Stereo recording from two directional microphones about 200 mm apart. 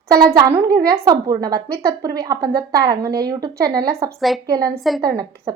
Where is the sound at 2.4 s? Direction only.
50° right (ahead or behind).